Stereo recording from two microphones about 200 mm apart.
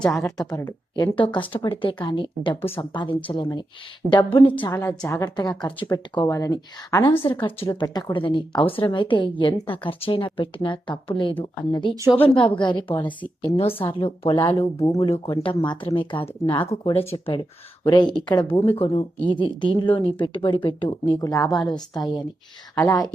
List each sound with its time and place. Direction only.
0.2 s speech: 15° left (ahead or behind)
4.7 s speech: 15° left (ahead or behind)